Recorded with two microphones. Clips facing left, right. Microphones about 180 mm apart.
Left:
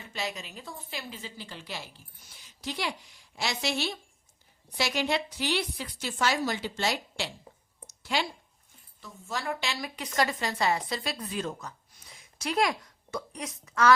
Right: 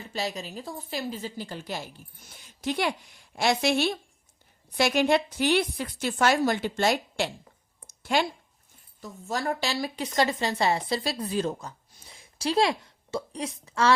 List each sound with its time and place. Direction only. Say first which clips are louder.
0.1 s a woman's voice: right 4 dB; 35° right (ahead or behind)